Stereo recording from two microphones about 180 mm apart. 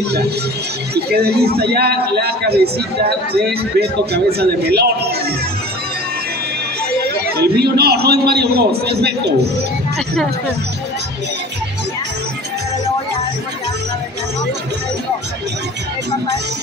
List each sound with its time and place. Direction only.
0.9 s a man's voice: 60° right (ahead or behind)
3.8 s a man's voice: 65° right (ahead or behind)
7.3 s a man's voice: 60° right (ahead or behind)